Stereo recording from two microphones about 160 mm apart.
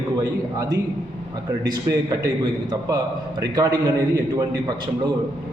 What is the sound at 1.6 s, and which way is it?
Speech, 25° right (ahead or behind).